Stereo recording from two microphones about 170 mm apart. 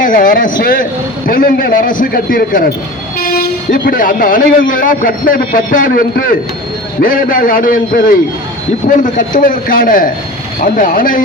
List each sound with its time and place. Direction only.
0.0 s a man's voice: 55° left (ahead or behind)